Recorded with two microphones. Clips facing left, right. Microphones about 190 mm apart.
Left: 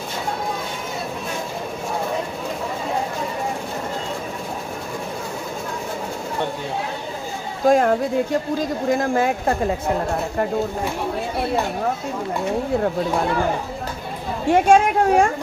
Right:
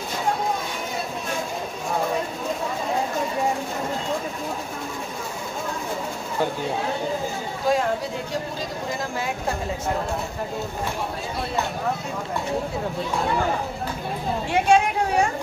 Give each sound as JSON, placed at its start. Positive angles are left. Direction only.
{"t": 7.6, "sound": "speech", "side_deg": 50}
{"t": 14.5, "sound": "speech", "side_deg": 45}